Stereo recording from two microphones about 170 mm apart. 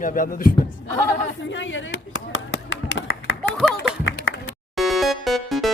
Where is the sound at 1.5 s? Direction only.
90° left.